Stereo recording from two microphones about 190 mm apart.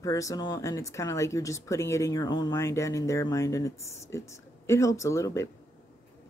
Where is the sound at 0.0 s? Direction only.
15° left (ahead or behind).